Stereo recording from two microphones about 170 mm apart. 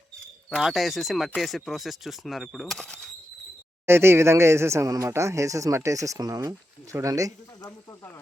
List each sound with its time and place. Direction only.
0.5 s speech: centre (ahead or behind)
3.8 s speech: 15° right (ahead or behind)